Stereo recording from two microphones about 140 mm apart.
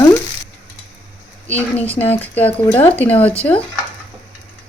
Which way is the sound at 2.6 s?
20° left (ahead or behind).